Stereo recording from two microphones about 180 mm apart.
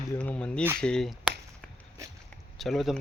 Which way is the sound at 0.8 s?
5° left (ahead or behind).